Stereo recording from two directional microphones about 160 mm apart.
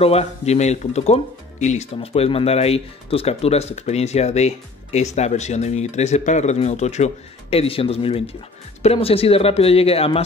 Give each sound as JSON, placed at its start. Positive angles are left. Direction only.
{"t": 0.0, "sound": "speech", "side_deg": 40}